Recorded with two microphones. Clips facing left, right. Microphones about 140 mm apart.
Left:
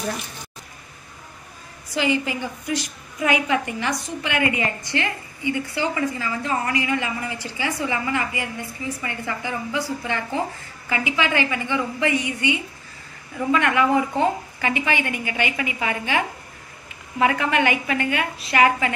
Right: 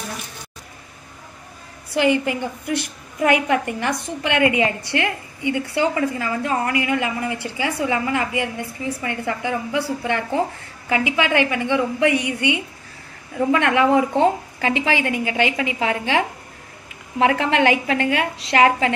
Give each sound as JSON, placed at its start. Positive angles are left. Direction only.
{"t": 2.0, "sound": "a woman's voice", "side_deg": -60}
{"t": 8.1, "sound": "a woman's voice", "side_deg": -75}
{"t": 13.5, "sound": "a woman's voice", "side_deg": -80}
{"t": 14.6, "sound": "a woman's voice", "side_deg": -90}